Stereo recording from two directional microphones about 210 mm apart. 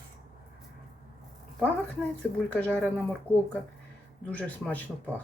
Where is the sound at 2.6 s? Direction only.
5° left (ahead or behind).